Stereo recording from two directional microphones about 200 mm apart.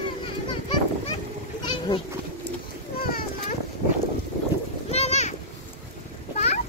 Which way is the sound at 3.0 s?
45° left (ahead or behind).